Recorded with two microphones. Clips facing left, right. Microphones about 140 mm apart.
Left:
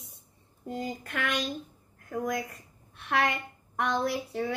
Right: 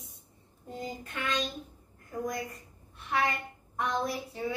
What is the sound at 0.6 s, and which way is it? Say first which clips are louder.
Child singing: left 4 dB; 85° left.